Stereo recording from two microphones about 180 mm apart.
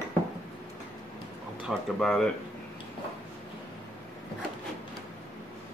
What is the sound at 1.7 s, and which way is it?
Speech, 5° left (ahead or behind).